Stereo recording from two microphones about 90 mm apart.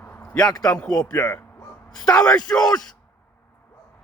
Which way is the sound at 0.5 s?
45° left (ahead or behind).